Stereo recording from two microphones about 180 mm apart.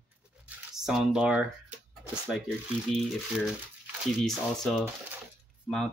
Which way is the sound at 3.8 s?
Centre (ahead or behind).